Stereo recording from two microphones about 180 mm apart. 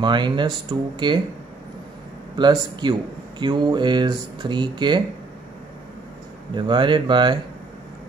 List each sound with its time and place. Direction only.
0.0 s speech: 25° right (ahead or behind)
2.3 s speech: 25° right (ahead or behind)
6.5 s speech: 25° right (ahead or behind)